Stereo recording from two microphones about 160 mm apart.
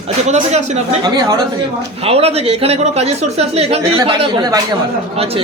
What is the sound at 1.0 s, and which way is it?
Speech, 25° right (ahead or behind).